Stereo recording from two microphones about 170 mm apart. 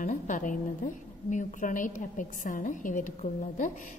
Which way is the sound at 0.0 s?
50° left (ahead or behind).